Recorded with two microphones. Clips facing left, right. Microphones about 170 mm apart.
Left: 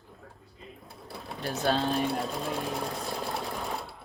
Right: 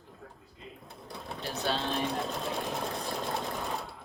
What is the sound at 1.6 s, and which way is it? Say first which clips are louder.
Speech: left 5 dB; 45° left (ahead or behind).